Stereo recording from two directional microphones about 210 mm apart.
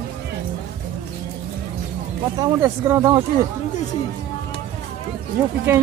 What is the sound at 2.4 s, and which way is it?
Speech, 15° right (ahead or behind).